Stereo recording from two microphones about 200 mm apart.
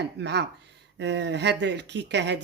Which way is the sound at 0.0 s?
55° right (ahead or behind).